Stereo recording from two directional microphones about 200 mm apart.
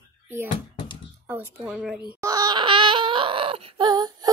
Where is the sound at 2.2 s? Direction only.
20° right (ahead or behind).